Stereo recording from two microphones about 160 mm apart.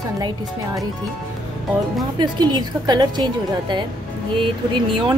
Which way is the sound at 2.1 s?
25° right (ahead or behind).